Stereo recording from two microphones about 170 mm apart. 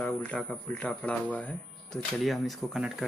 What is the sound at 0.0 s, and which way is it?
Speech, 5° left (ahead or behind).